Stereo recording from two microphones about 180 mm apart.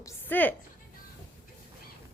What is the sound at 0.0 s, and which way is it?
Music, 10° left (ahead or behind).